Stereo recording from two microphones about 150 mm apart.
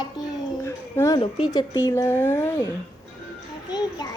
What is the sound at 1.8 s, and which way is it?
Speech, 20° left (ahead or behind).